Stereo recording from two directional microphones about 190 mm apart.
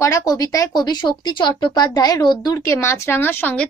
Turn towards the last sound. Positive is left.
turn(degrees=10)  # may be behind; listen again after turning